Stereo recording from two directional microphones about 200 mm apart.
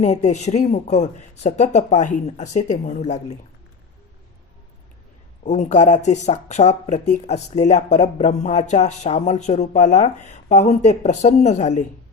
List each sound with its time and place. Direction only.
0.0 s speech: 35° left (ahead or behind)
5.4 s speech: 35° left (ahead or behind)